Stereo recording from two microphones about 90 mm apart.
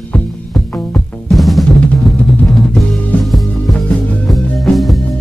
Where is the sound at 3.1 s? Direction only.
15° left (ahead or behind).